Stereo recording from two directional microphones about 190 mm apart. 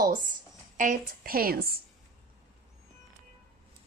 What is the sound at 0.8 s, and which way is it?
A woman's voice, 45° right (ahead or behind).